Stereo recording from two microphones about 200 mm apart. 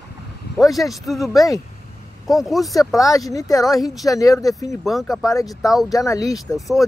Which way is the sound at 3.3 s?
15° left (ahead or behind).